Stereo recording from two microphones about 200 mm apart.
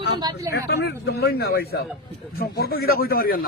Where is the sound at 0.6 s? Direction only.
55° left (ahead or behind).